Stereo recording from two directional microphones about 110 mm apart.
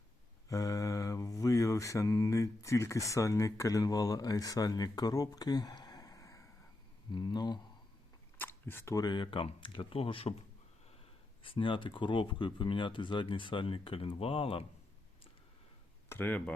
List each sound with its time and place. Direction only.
0.4 s mantra: 30° left (ahead or behind)
7.1 s speech: 40° left (ahead or behind)
8.4 s camera: 20° left (ahead or behind)
9.0 s speech: 40° left (ahead or behind); by 10.3 s 60° left (ahead or behind)
11.4 s speech: 50° left (ahead or behind)
16.0 s speech: 15° left (ahead or behind)